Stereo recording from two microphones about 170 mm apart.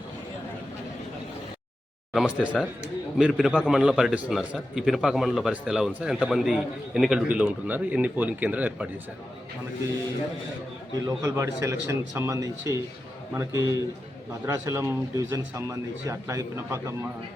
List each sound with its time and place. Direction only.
2.1 s a man's voice: 5° right (ahead or behind)
11.0 s a man's voice: 20° right (ahead or behind)